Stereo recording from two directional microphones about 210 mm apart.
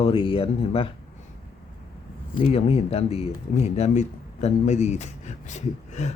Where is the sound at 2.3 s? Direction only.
30° left (ahead or behind).